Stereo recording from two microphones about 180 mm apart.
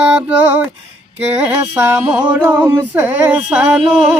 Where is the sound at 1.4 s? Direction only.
10° right (ahead or behind).